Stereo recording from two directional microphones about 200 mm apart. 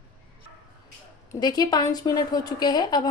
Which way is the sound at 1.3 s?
20° left (ahead or behind).